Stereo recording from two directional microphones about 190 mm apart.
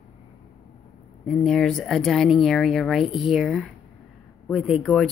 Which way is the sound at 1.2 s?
Centre (ahead or behind).